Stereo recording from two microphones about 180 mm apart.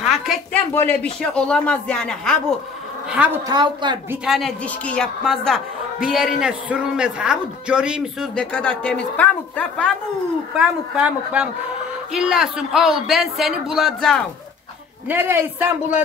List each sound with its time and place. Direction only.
0.0 s a sound: centre (ahead or behind)
0.7 s a man's voice: 5° left (ahead or behind)
3.4 s a woman's voice: 25° right (ahead or behind)
4.1 s a man's voice: 5° right (ahead or behind)
10.6 s a man's voice: 5° right (ahead or behind)
15.0 s speech: 10° right (ahead or behind)